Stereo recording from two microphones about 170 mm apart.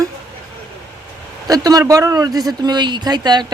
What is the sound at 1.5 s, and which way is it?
A woman's voice, 20° right (ahead or behind).